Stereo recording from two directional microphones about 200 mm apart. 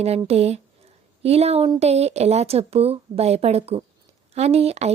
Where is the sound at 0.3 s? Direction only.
30° right (ahead or behind).